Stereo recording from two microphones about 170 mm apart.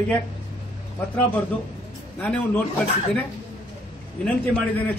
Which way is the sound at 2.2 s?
10° left (ahead or behind).